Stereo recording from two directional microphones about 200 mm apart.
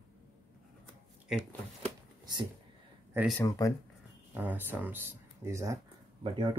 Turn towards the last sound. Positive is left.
turn(degrees=-25)  # may be behind; listen again after turning